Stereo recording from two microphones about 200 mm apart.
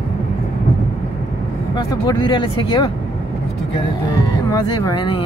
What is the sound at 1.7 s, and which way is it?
Speech, 20° left (ahead or behind).